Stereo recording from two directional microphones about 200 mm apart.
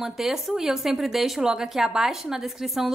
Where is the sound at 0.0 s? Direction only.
Centre (ahead or behind).